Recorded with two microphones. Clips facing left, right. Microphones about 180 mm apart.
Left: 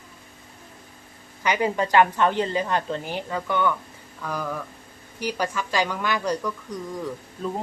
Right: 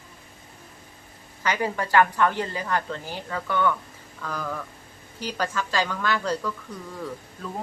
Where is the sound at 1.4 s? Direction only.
20° left (ahead or behind).